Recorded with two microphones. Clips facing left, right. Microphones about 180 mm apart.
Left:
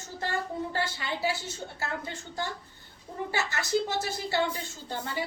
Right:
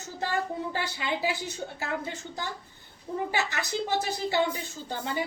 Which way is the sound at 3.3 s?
15° right (ahead or behind).